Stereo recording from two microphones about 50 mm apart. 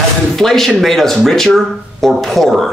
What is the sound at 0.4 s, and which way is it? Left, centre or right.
Speech, centre.